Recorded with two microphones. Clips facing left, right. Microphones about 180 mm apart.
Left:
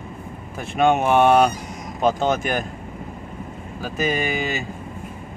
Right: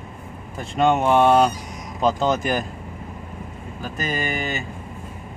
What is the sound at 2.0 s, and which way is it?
Speech, centre (ahead or behind).